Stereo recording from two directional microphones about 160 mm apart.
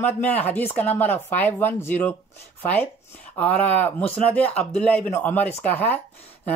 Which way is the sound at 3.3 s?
10° left (ahead or behind).